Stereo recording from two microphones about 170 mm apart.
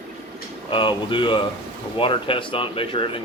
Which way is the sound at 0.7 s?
30° left (ahead or behind).